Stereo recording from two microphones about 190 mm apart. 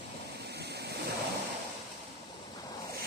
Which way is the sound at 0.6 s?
60° right (ahead or behind).